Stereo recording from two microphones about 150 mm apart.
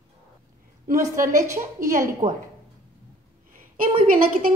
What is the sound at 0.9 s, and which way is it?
Speech, 20° right (ahead or behind).